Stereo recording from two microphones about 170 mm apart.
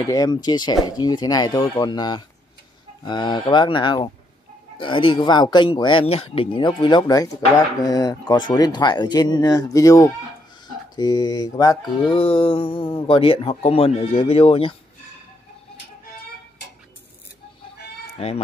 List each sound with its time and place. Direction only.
0.1 s speech: 25° left (ahead or behind)
12.1 s speech: 30° left (ahead or behind)